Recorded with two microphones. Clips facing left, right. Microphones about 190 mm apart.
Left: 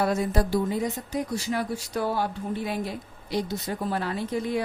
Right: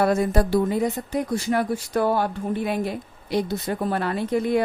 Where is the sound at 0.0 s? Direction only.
55° right (ahead or behind).